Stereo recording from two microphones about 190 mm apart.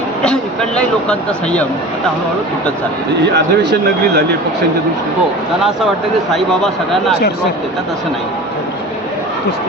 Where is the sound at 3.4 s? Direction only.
60° right (ahead or behind).